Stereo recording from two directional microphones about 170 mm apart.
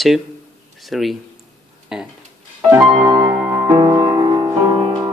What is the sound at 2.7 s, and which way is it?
Music, 20° right (ahead or behind).